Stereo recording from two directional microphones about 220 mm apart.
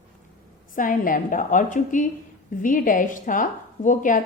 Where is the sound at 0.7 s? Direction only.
40° left (ahead or behind).